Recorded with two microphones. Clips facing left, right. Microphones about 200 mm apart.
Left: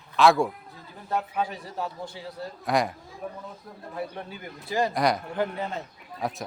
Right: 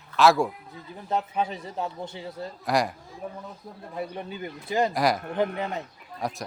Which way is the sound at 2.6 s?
Centre (ahead or behind).